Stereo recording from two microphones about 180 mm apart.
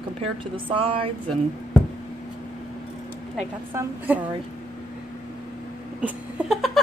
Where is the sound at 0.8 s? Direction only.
30° right (ahead or behind).